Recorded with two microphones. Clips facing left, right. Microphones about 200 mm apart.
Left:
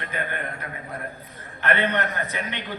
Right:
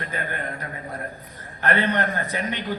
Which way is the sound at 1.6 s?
40° right (ahead or behind).